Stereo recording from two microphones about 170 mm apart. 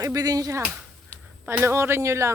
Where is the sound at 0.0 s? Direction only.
20° right (ahead or behind).